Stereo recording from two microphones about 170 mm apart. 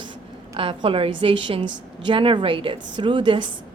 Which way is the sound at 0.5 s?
30° right (ahead or behind).